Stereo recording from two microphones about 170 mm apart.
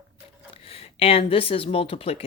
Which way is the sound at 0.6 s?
35° left (ahead or behind).